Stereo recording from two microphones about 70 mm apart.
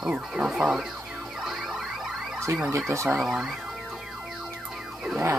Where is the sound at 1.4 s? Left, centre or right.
Centre.